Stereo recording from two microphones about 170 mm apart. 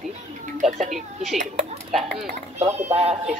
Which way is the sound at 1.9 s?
Centre (ahead or behind).